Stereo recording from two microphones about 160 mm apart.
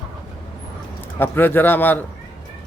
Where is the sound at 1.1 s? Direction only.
15° left (ahead or behind).